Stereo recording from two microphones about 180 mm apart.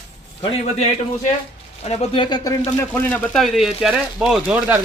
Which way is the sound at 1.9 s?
30° left (ahead or behind).